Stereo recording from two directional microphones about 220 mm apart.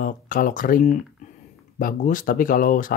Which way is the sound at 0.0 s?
40° left (ahead or behind).